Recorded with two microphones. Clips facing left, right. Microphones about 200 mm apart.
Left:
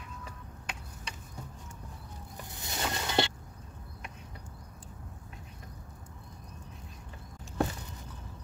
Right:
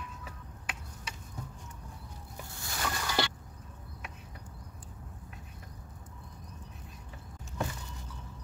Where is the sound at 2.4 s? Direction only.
20° left (ahead or behind).